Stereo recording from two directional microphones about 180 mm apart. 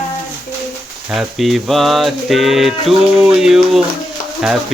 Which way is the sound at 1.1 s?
Centre (ahead or behind).